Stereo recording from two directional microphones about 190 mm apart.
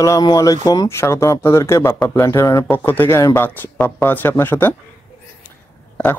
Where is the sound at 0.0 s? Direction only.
20° left (ahead or behind).